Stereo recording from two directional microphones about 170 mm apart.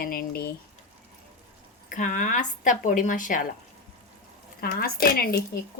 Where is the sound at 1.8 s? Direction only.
50° left (ahead or behind).